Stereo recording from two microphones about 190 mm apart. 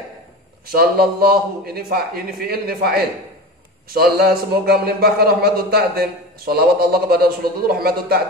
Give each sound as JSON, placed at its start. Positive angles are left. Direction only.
{"t": 0.7, "sound": "a man's voice", "side_deg": -55}